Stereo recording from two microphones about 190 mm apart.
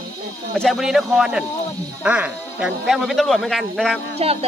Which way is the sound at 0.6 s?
Centre (ahead or behind).